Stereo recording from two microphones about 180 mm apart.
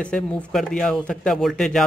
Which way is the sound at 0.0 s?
5° left (ahead or behind).